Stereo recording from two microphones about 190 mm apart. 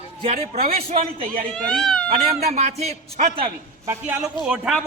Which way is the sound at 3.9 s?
10° right (ahead or behind).